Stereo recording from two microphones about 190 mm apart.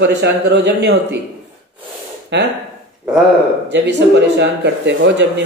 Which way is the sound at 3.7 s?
65° right (ahead or behind).